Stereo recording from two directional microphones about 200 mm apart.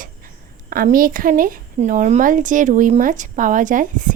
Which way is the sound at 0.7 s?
45° right (ahead or behind).